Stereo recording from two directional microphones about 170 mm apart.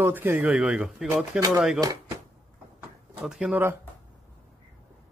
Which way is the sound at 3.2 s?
5° right (ahead or behind).